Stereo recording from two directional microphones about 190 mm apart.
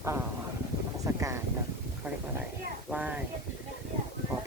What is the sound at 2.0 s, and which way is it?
Speech, 10° right (ahead or behind).